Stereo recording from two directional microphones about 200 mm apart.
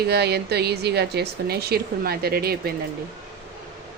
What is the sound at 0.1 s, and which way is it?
Speech, 55° right (ahead or behind).